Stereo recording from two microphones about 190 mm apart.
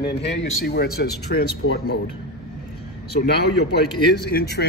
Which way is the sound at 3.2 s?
60° left (ahead or behind).